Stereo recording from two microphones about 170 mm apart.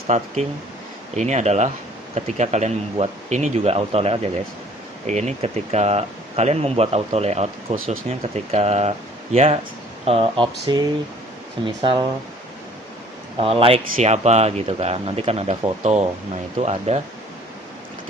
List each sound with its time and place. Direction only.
0.1 s speech: 45° right (ahead or behind)
13.4 s speech: 35° right (ahead or behind)